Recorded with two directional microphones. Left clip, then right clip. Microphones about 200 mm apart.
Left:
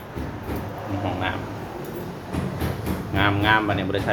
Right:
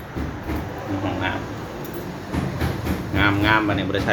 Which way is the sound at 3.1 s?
5° left (ahead or behind).